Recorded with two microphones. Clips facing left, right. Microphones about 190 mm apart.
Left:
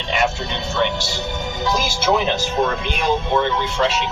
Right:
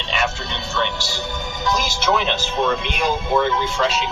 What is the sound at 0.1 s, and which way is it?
Speech, 20° left (ahead or behind).